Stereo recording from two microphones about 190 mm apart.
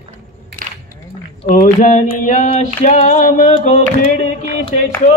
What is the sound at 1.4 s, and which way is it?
Female singing, 45° left (ahead or behind).